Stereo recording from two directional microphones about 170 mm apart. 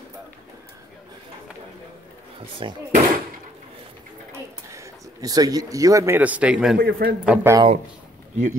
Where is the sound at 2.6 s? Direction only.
30° right (ahead or behind).